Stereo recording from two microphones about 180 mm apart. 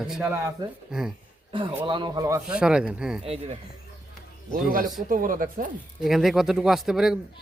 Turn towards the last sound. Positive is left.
turn(degrees=-5)  # may be behind; listen again after turning